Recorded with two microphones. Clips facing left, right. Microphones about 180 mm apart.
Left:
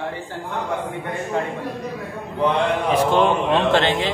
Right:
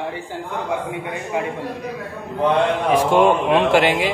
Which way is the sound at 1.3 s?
10° right (ahead or behind).